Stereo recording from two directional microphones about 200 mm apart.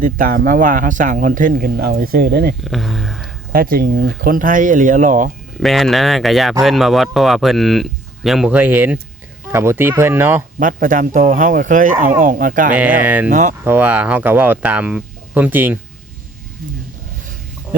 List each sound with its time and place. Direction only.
0.0 s speech: 45° right (ahead or behind)
2.6 s speech: centre (ahead or behind)
3.5 s speech: 45° right (ahead or behind)
5.6 s speech: centre (ahead or behind)
10.6 s speech: 40° right (ahead or behind)
12.7 s speech: 5° right (ahead or behind)
13.3 s speech: 40° right (ahead or behind)
13.7 s speech: 10° right (ahead or behind)